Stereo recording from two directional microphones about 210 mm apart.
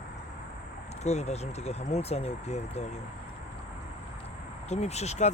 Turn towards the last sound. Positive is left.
turn(degrees=30)  # may be behind; listen again after turning